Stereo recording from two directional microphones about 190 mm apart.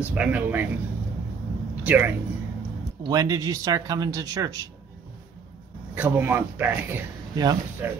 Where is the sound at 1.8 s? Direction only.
10° right (ahead or behind).